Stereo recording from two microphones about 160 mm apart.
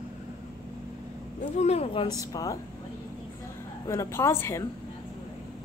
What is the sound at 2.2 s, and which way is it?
Speech, 20° left (ahead or behind).